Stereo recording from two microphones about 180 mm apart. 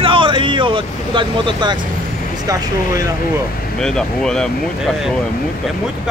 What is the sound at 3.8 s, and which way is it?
Speech, 5° left (ahead or behind).